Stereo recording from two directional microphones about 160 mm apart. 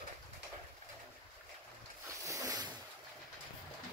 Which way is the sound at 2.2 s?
20° right (ahead or behind).